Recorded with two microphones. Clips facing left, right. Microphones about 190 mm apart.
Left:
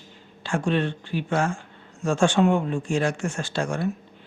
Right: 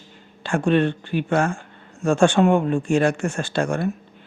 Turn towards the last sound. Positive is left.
turn(degrees=-55)  # may be behind; listen again after turning